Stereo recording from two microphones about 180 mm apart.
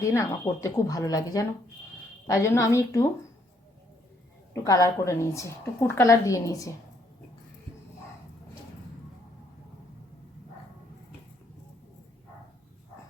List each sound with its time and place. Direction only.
0.0 s a woman's voice: 15° left (ahead or behind)
4.6 s a woman's voice: 20° left (ahead or behind)